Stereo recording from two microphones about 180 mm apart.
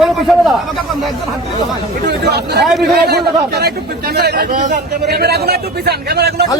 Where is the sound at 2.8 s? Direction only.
65° right (ahead or behind).